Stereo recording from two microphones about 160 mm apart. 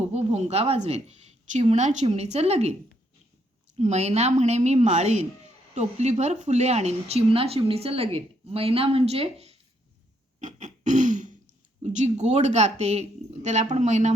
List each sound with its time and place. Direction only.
0.0 s a woman's voice: 40° right (ahead or behind)
3.8 s a woman's voice: 45° right (ahead or behind)
10.4 s a sound: 50° right (ahead or behind)
11.8 s a woman's voice: 45° right (ahead or behind)